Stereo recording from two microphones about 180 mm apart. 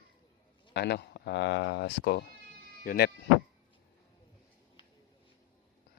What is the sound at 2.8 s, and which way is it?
Speech, 55° left (ahead or behind).